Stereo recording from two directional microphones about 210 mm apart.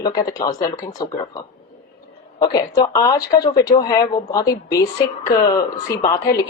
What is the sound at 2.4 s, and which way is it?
Speech, 20° left (ahead or behind).